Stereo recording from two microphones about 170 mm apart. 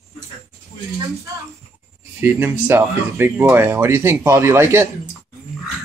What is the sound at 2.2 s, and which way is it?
Speech, 15° right (ahead or behind).